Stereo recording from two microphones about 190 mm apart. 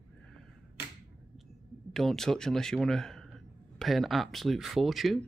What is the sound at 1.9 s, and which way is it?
Speech, centre (ahead or behind).